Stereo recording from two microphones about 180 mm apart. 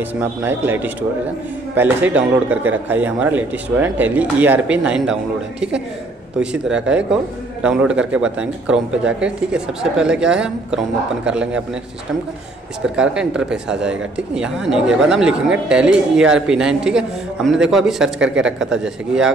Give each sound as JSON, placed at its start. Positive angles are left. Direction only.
{"t": 0.2, "sound": "a man's voice", "side_deg": -10}
{"t": 6.4, "sound": "speech", "side_deg": -5}
{"t": 12.8, "sound": "speech", "side_deg": -5}